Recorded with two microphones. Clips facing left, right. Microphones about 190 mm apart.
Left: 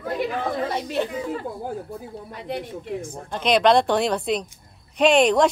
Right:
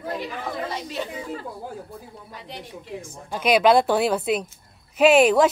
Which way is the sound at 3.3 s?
5° right (ahead or behind).